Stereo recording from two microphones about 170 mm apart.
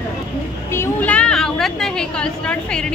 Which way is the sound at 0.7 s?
10° left (ahead or behind).